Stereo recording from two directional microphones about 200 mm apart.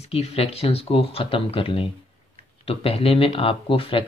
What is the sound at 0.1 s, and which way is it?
Speech, 30° left (ahead or behind).